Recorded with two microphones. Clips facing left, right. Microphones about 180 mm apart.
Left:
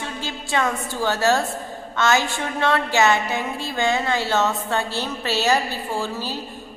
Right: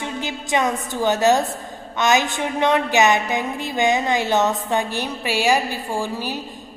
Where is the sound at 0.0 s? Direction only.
15° right (ahead or behind).